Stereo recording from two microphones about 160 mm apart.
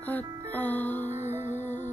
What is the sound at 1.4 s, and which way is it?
Music, 45° left (ahead or behind).